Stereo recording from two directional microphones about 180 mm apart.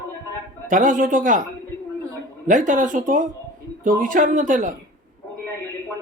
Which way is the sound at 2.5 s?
45° right (ahead or behind).